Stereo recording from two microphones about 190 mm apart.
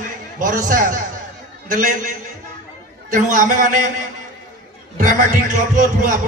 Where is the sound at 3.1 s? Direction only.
40° right (ahead or behind).